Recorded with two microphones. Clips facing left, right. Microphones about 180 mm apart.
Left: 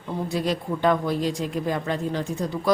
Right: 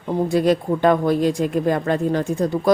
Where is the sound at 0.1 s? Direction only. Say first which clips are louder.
Right 8 dB; 50° right (ahead or behind).